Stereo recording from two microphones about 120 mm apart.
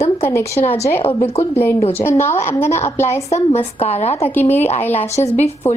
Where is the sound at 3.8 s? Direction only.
60° left (ahead or behind).